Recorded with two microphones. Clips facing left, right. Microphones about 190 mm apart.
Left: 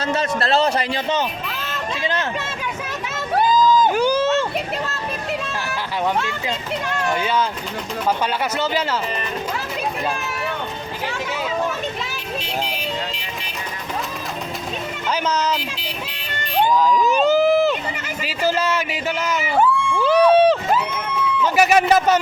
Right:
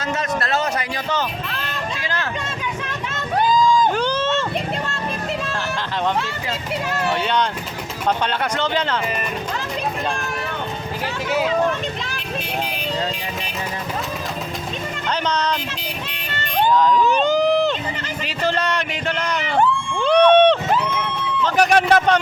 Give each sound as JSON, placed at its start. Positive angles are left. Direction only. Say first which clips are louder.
{"t": 0.1, "sound": "a man's voice", "louder": "left 2 dB", "side_deg": 30}
{"t": 1.5, "sound": "a sound", "louder": "even", "side_deg": 5}
{"t": 2.0, "sound": "speech", "louder": "left 7 dB", "side_deg": 20}
{"t": 3.3, "sound": "crowd", "louder": "left 1 dB", "side_deg": 5}
{"t": 6.9, "sound": "speech", "louder": "even", "side_deg": 0}
{"t": 15.1, "sound": "speech", "louder": "left 1 dB", "side_deg": 5}
{"t": 16.3, "sound": "a sound", "louder": "even", "side_deg": 10}
{"t": 18.3, "sound": "speech", "louder": "left 2 dB", "side_deg": 5}